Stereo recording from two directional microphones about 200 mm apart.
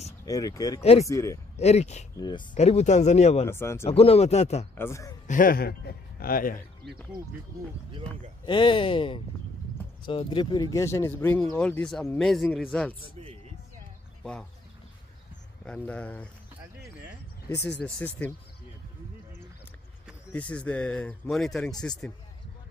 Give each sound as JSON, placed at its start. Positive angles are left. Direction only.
{"t": 0.2, "sound": "speech", "side_deg": 20}
{"t": 1.6, "sound": "speech", "side_deg": 35}
{"t": 2.1, "sound": "speech", "side_deg": 20}
{"t": 2.5, "sound": "speech", "side_deg": 35}
{"t": 3.4, "sound": "speech", "side_deg": 15}
{"t": 3.8, "sound": "speech", "side_deg": 30}
{"t": 4.7, "sound": "speech", "side_deg": 15}
{"t": 5.2, "sound": "speech", "side_deg": 40}
{"t": 8.5, "sound": "speech", "side_deg": 25}
{"t": 15.6, "sound": "speech", "side_deg": 5}
{"t": 17.8, "sound": "speech", "side_deg": 10}
{"t": 20.3, "sound": "speech", "side_deg": 5}